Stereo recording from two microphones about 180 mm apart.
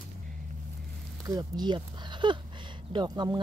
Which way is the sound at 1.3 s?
20° right (ahead or behind).